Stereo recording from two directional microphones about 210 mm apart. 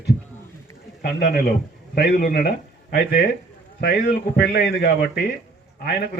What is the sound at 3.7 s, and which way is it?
A man's voice, 50° left (ahead or behind).